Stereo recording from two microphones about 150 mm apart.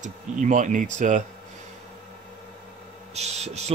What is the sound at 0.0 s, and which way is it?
Speech, 55° right (ahead or behind).